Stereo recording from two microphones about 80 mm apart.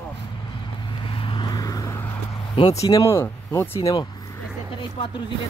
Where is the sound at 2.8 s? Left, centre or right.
Left.